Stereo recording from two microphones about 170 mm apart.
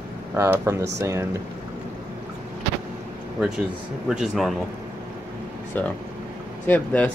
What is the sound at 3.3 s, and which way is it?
Speech, 5° right (ahead or behind).